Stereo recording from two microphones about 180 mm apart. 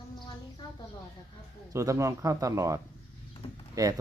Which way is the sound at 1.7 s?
15° right (ahead or behind).